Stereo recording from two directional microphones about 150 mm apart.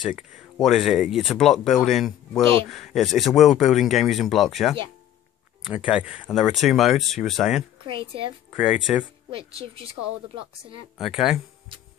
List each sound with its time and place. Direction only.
0.0 s speech: 5° right (ahead or behind)
7.8 s a woman's voice: 35° right (ahead or behind)
8.5 s speech: 5° right (ahead or behind)
9.3 s a woman's voice: 40° right (ahead or behind)
11.0 s speech: 5° right (ahead or behind)